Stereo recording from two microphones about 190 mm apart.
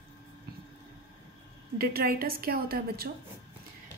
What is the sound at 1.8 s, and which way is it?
A woman's voice, 50° right (ahead or behind).